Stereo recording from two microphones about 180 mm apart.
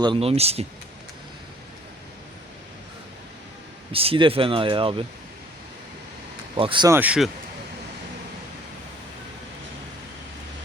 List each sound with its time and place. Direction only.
0.0 s speech: 30° right (ahead or behind)
3.9 s speech: 30° right (ahead or behind)
6.6 s speech: 25° right (ahead or behind)
6.9 s speech: 5° right (ahead or behind)